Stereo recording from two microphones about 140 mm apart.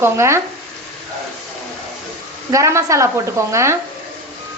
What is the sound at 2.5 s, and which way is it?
Speech, 20° right (ahead or behind).